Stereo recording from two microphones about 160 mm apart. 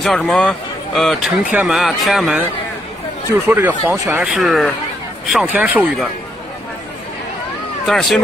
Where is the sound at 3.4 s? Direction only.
15° right (ahead or behind).